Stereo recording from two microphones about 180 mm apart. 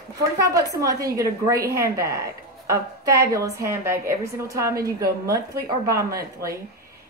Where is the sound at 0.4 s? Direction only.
20° right (ahead or behind).